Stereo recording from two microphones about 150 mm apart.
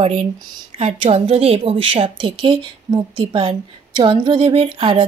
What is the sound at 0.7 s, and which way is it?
Speech, 45° right (ahead or behind).